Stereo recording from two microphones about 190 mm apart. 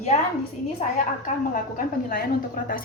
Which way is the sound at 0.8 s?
35° left (ahead or behind).